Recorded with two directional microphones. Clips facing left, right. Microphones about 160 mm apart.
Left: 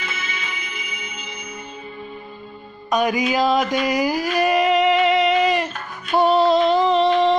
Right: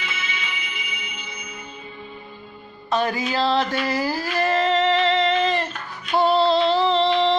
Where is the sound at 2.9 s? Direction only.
15° left (ahead or behind).